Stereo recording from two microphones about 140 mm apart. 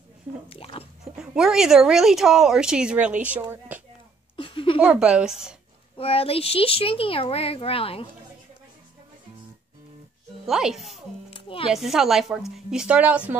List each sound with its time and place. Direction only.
0.5 s a sound: 40° left (ahead or behind)
1.1 s speech: 5° right (ahead or behind)
4.4 s a sound: 40° left (ahead or behind)
4.8 s speech: 5° right (ahead or behind)
5.9 s speech: 45° left (ahead or behind)
10.4 s speech: 5° right (ahead or behind)
11.2 s music: 40° left (ahead or behind)
11.7 s speech: 5° right (ahead or behind)